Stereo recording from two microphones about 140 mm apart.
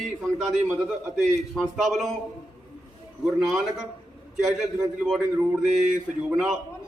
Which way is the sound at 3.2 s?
5° right (ahead or behind).